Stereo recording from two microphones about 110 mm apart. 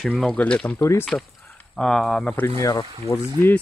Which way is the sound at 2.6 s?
30° left (ahead or behind).